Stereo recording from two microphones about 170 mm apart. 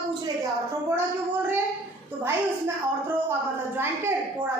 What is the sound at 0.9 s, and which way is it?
A child's voice, 15° right (ahead or behind).